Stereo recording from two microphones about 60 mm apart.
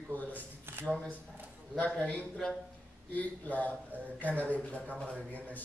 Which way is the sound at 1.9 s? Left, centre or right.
Left.